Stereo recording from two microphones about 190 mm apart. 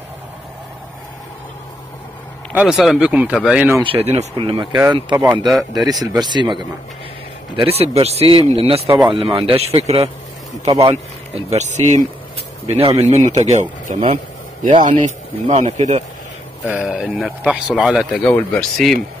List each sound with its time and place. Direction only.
2.5 s a man's voice: 5° right (ahead or behind)
3.8 s speech: 30° right (ahead or behind)
5.5 s a man's voice: centre (ahead or behind)
5.9 s speech: 20° right (ahead or behind)
11.3 s speech: 35° right (ahead or behind)
16.6 s a man's voice: 5° right (ahead or behind)